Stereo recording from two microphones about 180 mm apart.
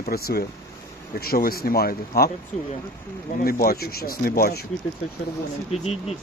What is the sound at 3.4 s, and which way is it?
Speech, 55° left (ahead or behind).